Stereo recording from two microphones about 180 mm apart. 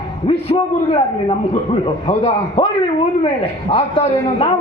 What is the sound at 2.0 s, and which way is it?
Speech, 30° left (ahead or behind).